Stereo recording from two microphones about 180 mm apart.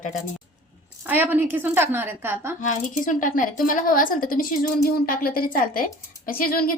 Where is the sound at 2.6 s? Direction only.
45° left (ahead or behind).